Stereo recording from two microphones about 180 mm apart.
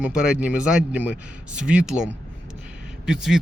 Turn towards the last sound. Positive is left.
turn(degrees=-5)  # may be behind; listen again after turning